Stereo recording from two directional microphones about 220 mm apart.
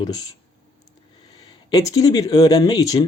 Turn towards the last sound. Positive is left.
turn(degrees=15)  # may be behind; listen again after turning